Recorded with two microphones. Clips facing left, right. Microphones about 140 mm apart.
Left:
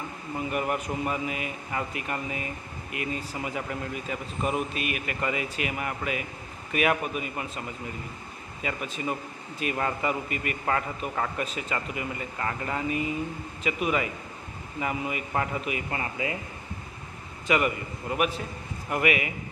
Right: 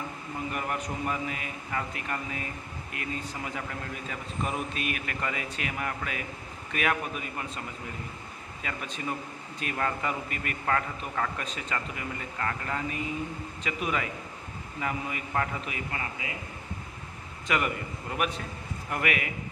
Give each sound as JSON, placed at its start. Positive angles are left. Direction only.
{"t": 0.5, "sound": "a man's voice", "side_deg": 5}
{"t": 8.6, "sound": "a man's voice", "side_deg": 5}
{"t": 15.9, "sound": "speech", "side_deg": 30}
{"t": 17.5, "sound": "a man's voice", "side_deg": 5}